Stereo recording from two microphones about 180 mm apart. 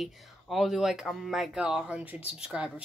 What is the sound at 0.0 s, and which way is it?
Speech, centre (ahead or behind).